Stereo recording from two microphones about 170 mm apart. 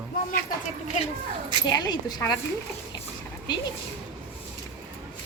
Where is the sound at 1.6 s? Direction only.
25° left (ahead or behind).